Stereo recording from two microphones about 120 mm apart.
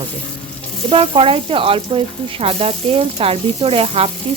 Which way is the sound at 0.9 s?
50° right (ahead or behind).